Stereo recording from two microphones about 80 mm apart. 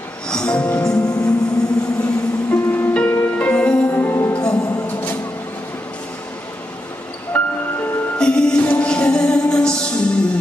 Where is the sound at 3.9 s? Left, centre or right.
Left.